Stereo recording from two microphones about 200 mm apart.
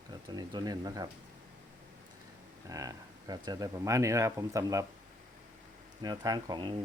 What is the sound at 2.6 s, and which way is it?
Speech, 15° right (ahead or behind).